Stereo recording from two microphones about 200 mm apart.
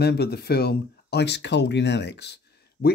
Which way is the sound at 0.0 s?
55° left (ahead or behind).